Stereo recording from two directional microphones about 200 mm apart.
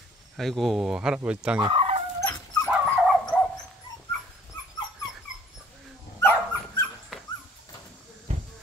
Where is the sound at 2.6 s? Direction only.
Centre (ahead or behind).